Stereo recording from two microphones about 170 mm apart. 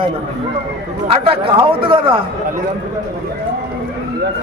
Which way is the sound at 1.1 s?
30° right (ahead or behind).